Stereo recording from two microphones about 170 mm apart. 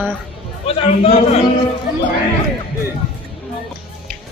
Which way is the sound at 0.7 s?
35° left (ahead or behind).